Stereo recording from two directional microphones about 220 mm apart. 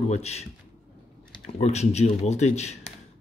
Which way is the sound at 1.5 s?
30° left (ahead or behind).